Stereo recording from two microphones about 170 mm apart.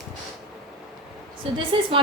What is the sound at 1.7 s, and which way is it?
Speech, 30° right (ahead or behind).